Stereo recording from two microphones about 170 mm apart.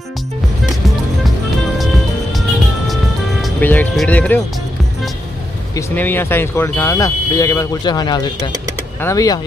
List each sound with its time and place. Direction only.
3.6 s speech: 10° left (ahead or behind)
5.8 s speech: 15° left (ahead or behind)